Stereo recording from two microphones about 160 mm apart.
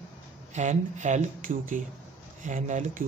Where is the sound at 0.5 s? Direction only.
50° right (ahead or behind).